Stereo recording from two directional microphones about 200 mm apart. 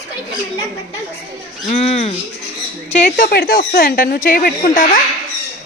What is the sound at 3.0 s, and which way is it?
Speech, 45° left (ahead or behind).